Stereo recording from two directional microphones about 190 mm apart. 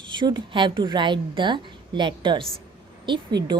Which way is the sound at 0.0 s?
25° right (ahead or behind).